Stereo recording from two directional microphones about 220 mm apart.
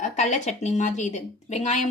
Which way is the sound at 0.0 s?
30° left (ahead or behind).